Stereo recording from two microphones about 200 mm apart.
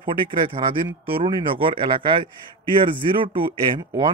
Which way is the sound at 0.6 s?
15° right (ahead or behind).